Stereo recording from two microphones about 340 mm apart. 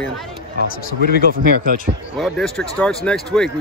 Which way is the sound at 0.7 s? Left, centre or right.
Left.